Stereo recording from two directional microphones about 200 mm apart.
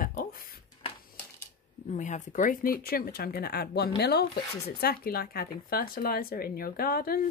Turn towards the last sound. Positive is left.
turn(degrees=50)  # may be behind; listen again after turning